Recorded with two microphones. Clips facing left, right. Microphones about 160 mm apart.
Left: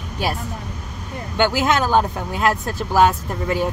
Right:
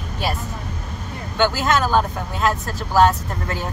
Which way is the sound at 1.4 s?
15° left (ahead or behind).